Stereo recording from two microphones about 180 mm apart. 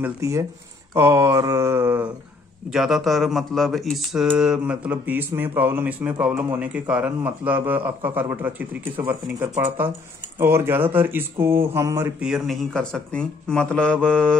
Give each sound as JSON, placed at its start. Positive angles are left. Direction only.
{"t": 0.0, "sound": "speech", "side_deg": -15}
{"t": 2.7, "sound": "speech", "side_deg": 0}